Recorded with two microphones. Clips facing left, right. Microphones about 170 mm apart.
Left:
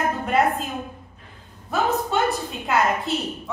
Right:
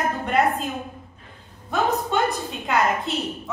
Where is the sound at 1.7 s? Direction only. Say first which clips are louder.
Even; centre (ahead or behind).